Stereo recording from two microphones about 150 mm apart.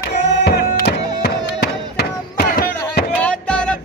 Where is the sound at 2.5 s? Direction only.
80° left.